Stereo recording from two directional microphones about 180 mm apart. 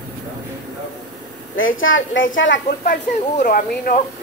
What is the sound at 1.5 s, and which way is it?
A woman's voice, 90° left.